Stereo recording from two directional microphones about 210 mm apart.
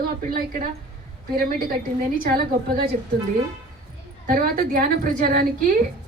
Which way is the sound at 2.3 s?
45° right (ahead or behind).